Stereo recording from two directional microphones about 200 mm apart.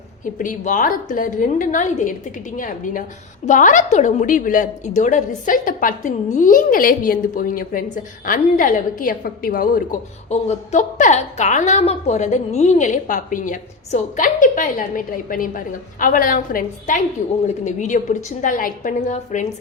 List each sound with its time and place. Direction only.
0.3 s a woman's voice: 40° left (ahead or behind)
10.2 s a woman's voice: 35° left (ahead or behind)